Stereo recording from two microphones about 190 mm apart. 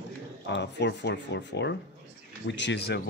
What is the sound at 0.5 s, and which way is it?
Speech, 65° left (ahead or behind).